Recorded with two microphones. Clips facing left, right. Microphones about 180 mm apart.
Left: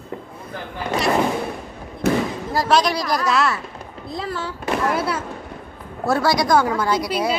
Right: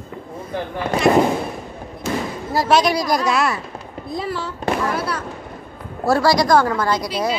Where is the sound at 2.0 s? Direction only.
60° left (ahead or behind).